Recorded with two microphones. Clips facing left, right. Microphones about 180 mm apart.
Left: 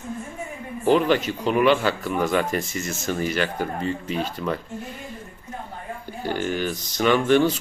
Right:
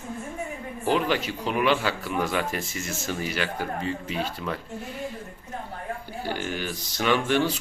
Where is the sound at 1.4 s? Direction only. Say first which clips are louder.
Left 5 dB; 5° right (ahead or behind).